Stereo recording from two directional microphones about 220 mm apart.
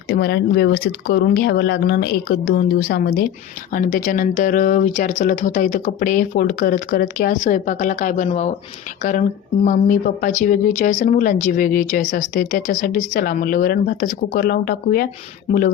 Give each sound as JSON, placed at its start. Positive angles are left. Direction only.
{"t": 0.1, "sound": "speech", "side_deg": 50}